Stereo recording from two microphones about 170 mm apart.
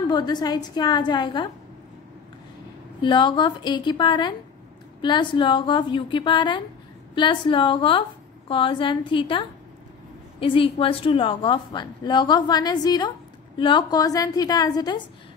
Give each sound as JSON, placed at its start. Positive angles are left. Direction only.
{"t": 0.1, "sound": "a woman's voice", "side_deg": 25}
{"t": 3.0, "sound": "a woman's voice", "side_deg": 30}